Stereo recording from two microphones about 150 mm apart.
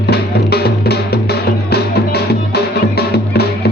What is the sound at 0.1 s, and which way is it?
Music, 90° left.